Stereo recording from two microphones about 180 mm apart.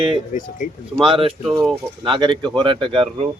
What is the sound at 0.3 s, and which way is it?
Speech, 45° left (ahead or behind).